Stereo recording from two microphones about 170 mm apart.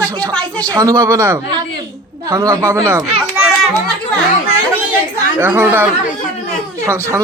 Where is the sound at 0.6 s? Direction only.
20° right (ahead or behind).